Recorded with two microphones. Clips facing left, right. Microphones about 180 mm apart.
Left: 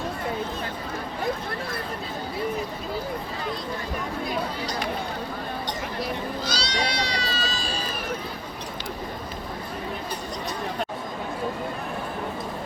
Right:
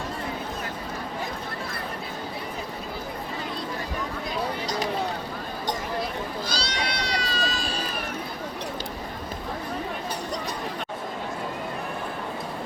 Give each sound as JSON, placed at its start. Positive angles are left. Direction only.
{"t": 6.4, "sound": "cat", "side_deg": -50}